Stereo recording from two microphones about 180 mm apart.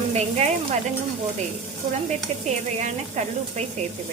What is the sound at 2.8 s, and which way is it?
Speech, 40° right (ahead or behind).